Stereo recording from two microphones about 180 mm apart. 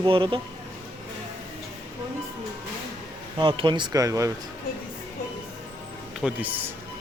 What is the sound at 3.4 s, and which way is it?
Speech, 25° right (ahead or behind).